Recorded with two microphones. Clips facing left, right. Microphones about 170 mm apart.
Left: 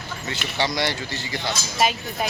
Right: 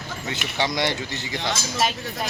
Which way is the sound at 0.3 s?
20° right (ahead or behind).